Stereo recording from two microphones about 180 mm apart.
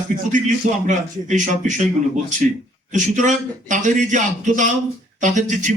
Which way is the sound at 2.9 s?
45° right (ahead or behind).